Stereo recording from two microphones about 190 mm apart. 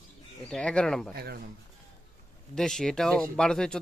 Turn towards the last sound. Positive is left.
turn(degrees=5)  # may be behind; listen again after turning